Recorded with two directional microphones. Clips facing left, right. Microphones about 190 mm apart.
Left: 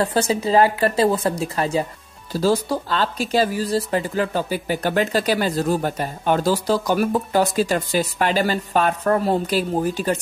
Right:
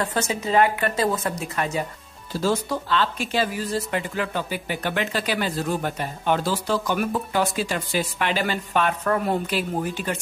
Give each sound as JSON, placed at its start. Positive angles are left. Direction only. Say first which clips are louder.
{"t": 0.0, "sound": "speech", "louder": "left 5 dB", "side_deg": 35}